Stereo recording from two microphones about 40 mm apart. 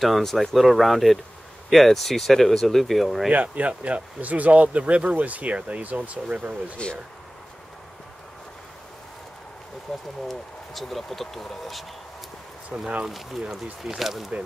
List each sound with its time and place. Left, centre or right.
0.0 s speech: centre
3.3 s speech: right
6.8 s speech: left
9.9 s speech: centre
13.0 s speech: centre